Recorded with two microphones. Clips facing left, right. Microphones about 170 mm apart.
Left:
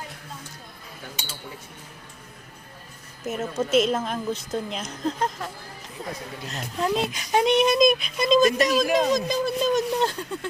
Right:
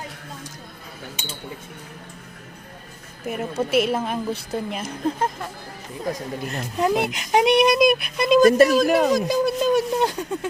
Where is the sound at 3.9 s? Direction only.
10° right (ahead or behind).